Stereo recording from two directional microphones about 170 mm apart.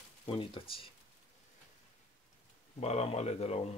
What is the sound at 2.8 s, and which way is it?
Speech, 40° left (ahead or behind).